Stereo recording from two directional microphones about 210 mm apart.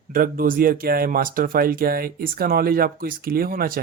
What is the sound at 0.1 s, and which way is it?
Speech, 45° right (ahead or behind).